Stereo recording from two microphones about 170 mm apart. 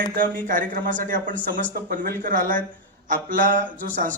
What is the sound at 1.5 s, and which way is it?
Speech, 90° right.